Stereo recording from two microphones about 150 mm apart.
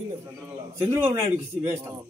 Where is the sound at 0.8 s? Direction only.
15° right (ahead or behind).